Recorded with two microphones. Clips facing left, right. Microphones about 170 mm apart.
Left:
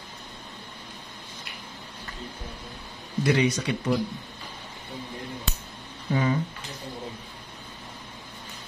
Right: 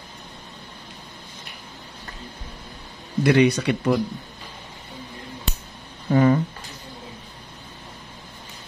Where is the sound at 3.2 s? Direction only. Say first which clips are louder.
Right 6 dB; 65° right (ahead or behind).